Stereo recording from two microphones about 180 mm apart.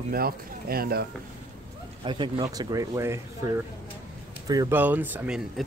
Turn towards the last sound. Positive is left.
turn(degrees=-5)  # may be behind; listen again after turning